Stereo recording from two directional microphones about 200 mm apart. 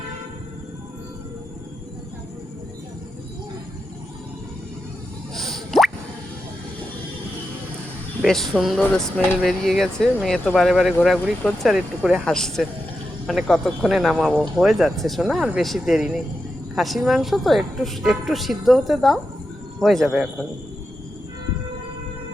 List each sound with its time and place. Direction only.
5.3 s plop: centre (ahead or behind)
8.2 s speech: centre (ahead or behind)